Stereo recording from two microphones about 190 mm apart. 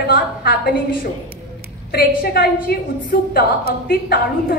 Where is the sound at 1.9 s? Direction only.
55° left (ahead or behind).